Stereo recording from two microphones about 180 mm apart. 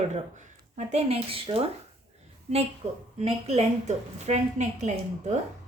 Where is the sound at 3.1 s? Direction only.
35° right (ahead or behind).